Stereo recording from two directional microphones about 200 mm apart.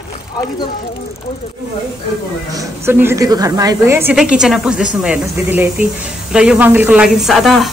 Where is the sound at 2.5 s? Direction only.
15° right (ahead or behind).